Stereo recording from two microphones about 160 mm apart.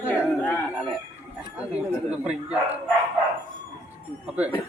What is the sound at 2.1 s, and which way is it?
Speech, 5° right (ahead or behind).